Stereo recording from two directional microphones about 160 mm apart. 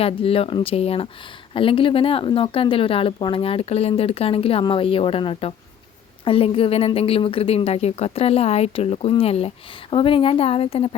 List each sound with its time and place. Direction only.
0.0 s a woman's voice: 35° left (ahead or behind)